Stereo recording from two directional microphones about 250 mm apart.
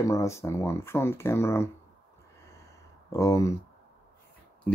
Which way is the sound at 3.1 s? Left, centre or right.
Centre.